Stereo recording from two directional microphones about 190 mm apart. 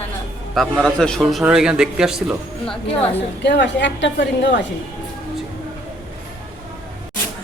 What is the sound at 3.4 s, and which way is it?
A woman's voice, 65° left (ahead or behind).